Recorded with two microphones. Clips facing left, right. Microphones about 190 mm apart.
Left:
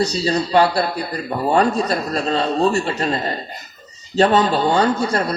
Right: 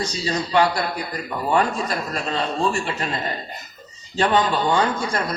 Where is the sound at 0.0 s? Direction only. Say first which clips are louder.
Left 6 dB; 35° left (ahead or behind).